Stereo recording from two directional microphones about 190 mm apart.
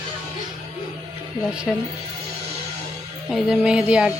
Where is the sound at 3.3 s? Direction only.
5° right (ahead or behind).